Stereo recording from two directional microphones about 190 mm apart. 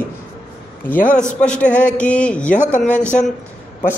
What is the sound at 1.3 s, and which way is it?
A man's voice, 5° left (ahead or behind).